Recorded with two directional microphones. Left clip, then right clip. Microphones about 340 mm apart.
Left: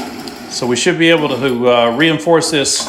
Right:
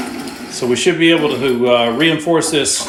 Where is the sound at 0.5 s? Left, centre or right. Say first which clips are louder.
Even; centre.